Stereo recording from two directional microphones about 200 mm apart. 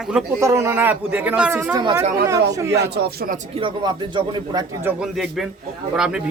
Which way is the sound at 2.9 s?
55° right (ahead or behind).